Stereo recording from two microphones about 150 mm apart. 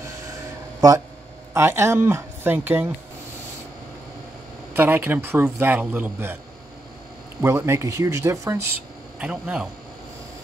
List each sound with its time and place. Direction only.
0.7 s speech: 25° right (ahead or behind)
4.7 s a man's voice: 15° right (ahead or behind)
7.4 s a man's voice: 20° right (ahead or behind)